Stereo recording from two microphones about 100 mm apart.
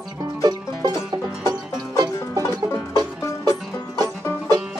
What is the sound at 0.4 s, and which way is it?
Music, 40° right (ahead or behind).